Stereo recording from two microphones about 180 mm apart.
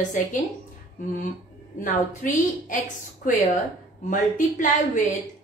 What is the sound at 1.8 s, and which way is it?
A woman's voice, 45° left (ahead or behind).